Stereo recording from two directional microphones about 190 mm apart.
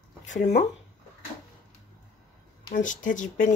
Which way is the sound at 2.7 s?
45° left (ahead or behind).